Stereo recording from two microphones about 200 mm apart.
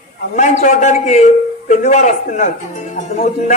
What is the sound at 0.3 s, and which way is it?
A man's voice, 40° left (ahead or behind).